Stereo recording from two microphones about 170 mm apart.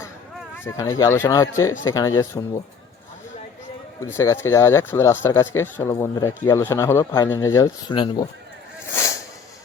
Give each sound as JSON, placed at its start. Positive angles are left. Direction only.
{"t": 0.6, "sound": "a man's voice", "side_deg": 15}
{"t": 4.0, "sound": "a man's voice", "side_deg": 15}
{"t": 7.9, "sound": "speech", "side_deg": 30}